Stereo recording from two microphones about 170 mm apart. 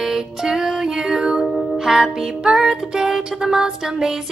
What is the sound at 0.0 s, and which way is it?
Music, 5° right (ahead or behind).